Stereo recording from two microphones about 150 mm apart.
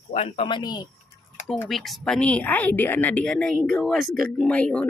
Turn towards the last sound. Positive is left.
turn(degrees=10)  # may be behind; listen again after turning